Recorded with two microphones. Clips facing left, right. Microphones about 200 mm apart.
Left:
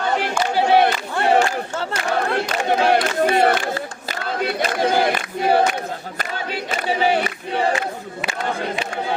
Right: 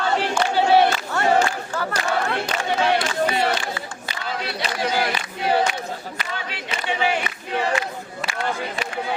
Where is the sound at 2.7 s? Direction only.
50° left (ahead or behind).